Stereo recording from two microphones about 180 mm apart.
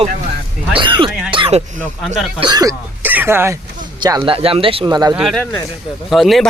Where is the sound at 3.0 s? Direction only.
10° right (ahead or behind).